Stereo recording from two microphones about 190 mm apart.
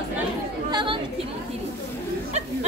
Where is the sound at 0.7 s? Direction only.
25° right (ahead or behind).